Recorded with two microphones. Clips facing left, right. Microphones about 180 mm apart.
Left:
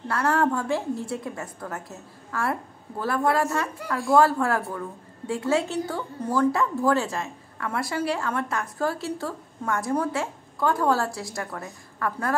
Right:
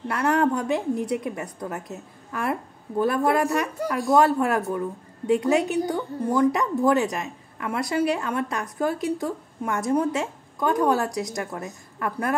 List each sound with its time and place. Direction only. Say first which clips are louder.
0.1 s a woman's voice: right 1 dB; 20° right (ahead or behind)